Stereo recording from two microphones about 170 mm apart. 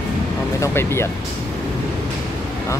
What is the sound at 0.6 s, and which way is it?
Speech, 15° left (ahead or behind).